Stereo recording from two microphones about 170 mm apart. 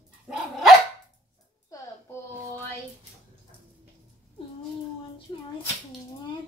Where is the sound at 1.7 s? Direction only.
20° left (ahead or behind).